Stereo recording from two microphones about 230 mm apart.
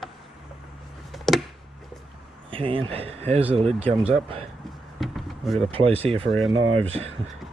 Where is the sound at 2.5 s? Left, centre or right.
Right.